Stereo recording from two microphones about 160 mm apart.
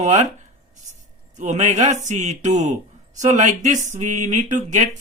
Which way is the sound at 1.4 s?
50° right (ahead or behind).